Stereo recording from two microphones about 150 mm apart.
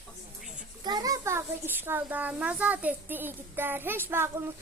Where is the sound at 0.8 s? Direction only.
25° right (ahead or behind).